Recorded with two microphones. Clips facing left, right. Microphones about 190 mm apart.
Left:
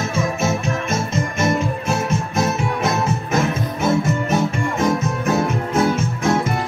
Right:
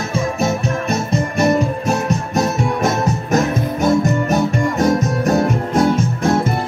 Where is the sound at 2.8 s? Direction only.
40° right (ahead or behind).